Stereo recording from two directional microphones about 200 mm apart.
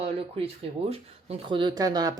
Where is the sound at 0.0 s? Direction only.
30° right (ahead or behind).